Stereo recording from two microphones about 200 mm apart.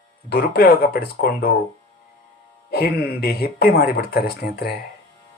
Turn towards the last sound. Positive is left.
turn(degrees=50)  # may be behind; listen again after turning